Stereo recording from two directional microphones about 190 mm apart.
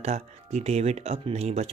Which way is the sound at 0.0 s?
35° right (ahead or behind).